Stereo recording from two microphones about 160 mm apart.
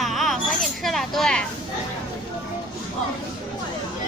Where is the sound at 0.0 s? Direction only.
Centre (ahead or behind).